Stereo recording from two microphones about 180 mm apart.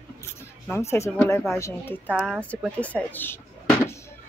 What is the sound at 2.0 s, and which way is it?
Speech, 5° right (ahead or behind).